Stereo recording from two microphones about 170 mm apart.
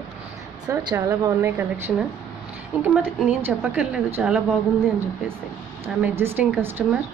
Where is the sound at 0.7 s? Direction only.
20° right (ahead or behind); by 4.4 s 5° right (ahead or behind).